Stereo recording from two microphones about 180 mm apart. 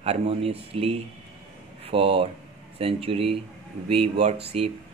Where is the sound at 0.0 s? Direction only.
40° right (ahead or behind).